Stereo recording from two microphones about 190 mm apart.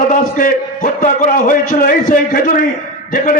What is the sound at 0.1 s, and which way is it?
A man's voice, 45° left (ahead or behind).